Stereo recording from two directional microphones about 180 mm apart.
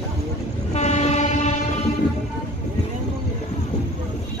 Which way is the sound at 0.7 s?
40° left (ahead or behind).